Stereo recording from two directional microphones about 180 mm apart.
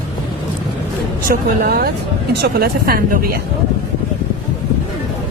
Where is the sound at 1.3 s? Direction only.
55° right (ahead or behind).